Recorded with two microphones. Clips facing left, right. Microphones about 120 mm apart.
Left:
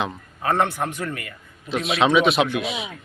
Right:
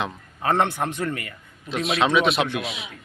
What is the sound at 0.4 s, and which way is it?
Speech, 25° right (ahead or behind).